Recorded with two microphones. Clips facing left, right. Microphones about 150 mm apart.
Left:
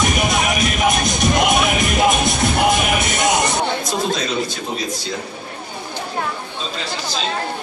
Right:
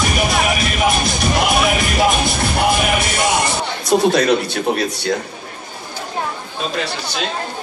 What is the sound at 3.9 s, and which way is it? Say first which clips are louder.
A man's voice: right 8 dB; 65° right (ahead or behind).